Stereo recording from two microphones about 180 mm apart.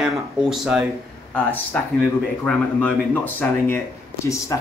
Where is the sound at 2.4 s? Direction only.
5° left (ahead or behind).